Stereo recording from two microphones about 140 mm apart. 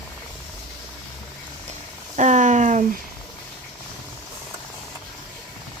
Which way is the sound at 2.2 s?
60° right (ahead or behind).